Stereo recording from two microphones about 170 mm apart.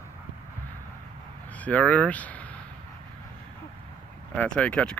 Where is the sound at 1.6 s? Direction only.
10° left (ahead or behind).